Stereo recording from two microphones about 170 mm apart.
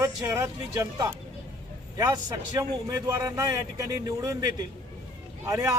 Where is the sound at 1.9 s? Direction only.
20° right (ahead or behind).